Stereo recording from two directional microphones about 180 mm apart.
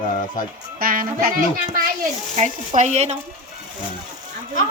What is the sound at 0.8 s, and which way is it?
Speech, 55° right (ahead or behind).